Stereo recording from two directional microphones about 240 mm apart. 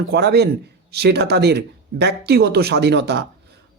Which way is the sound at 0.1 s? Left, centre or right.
Right.